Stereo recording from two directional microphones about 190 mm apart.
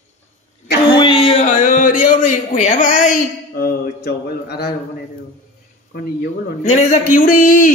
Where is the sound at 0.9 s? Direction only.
25° left (ahead or behind); by 4.7 s 55° left (ahead or behind).